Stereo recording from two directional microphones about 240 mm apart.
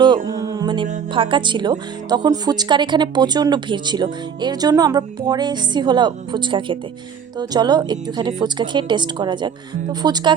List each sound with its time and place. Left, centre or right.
0.3 s music: centre
0.9 s speech: right